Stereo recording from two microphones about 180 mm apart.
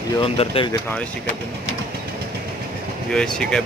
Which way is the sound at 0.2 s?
30° left (ahead or behind).